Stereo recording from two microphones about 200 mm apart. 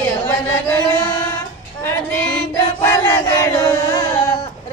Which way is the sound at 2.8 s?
15° left (ahead or behind).